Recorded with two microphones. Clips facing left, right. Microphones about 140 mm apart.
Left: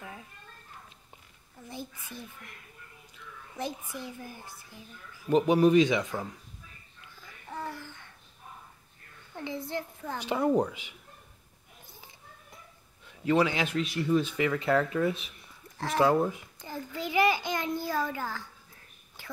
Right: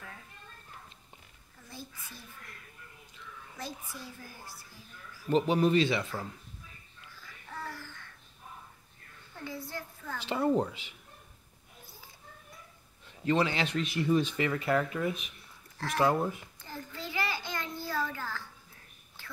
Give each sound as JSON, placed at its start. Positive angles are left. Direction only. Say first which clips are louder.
{"t": 1.7, "sound": "a child's voice", "louder": "left 5 dB", "side_deg": 20}
{"t": 3.5, "sound": "a child's voice", "louder": "left 7 dB", "side_deg": 20}
{"t": 7.4, "sound": "a sound", "louder": "left 4 dB", "side_deg": 20}
{"t": 9.4, "sound": "a child's voice", "louder": "left 5 dB", "side_deg": 20}
{"t": 13.2, "sound": "a child's voice", "louder": "left 3 dB", "side_deg": 10}
{"t": 14.2, "sound": "a child's voice", "louder": "left 2 dB", "side_deg": 10}
{"t": 15.0, "sound": "speech", "louder": "left 3 dB", "side_deg": 30}
{"t": 15.8, "sound": "a child's voice", "louder": "left 3 dB", "side_deg": 15}
{"t": 16.3, "sound": "a sound", "louder": "left 2 dB", "side_deg": 15}